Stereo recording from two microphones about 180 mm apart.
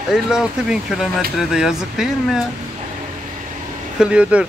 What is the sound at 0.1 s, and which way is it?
Speech, 5° right (ahead or behind).